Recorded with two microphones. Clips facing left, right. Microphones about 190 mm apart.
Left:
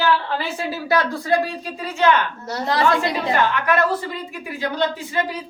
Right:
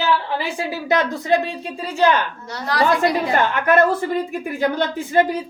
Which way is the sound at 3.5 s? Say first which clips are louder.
Right 4 dB; 50° right (ahead or behind).